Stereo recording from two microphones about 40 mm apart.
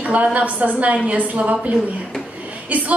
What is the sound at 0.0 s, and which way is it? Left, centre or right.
A woman's voice, right.